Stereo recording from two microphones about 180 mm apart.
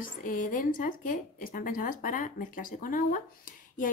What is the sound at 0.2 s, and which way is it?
A woman's voice, 45° left (ahead or behind).